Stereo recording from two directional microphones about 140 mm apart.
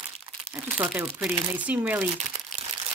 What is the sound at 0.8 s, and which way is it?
Speech, 10° right (ahead or behind).